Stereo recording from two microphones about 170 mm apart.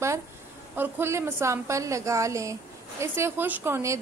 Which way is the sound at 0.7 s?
10° right (ahead or behind).